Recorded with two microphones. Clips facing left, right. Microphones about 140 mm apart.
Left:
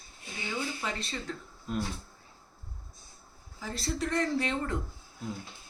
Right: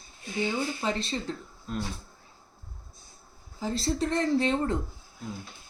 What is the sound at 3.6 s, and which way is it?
Speech, 25° right (ahead or behind).